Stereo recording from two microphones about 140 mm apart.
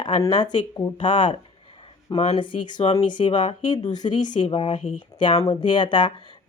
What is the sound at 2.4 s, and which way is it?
Speech, 35° left (ahead or behind).